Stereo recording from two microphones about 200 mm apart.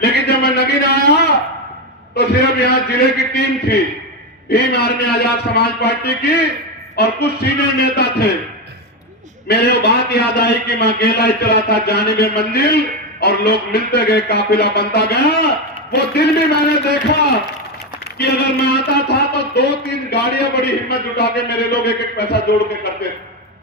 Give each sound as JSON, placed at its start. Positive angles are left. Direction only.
{"t": 0.0, "sound": "a sound", "side_deg": 55}
{"t": 2.1, "sound": "a man's voice", "side_deg": 55}
{"t": 9.5, "sound": "a man's voice", "side_deg": 55}